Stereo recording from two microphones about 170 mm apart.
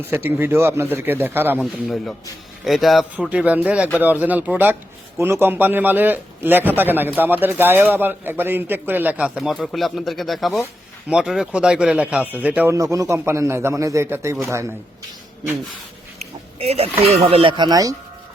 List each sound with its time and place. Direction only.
0.1 s a man's voice: 10° right (ahead or behind)
2.6 s a man's voice: centre (ahead or behind); by 14.7 s 15° right (ahead or behind)
16.1 s a sound: 35° right (ahead or behind)
17.0 s speech: 35° right (ahead or behind)